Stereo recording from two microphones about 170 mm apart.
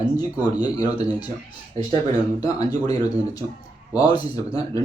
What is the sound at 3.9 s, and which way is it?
Speech, 25° left (ahead or behind).